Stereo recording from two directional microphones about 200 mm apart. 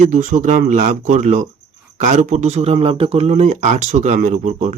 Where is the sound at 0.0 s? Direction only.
35° right (ahead or behind).